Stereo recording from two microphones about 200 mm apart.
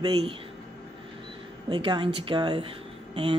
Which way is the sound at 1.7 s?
25° right (ahead or behind).